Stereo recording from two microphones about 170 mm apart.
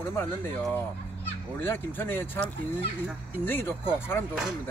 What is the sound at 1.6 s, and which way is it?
Speech, 15° left (ahead or behind).